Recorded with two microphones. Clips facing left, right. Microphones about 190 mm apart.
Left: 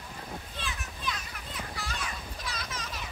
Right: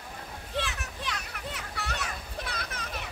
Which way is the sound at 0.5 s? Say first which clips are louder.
Right 6 dB; 70° right (ahead or behind).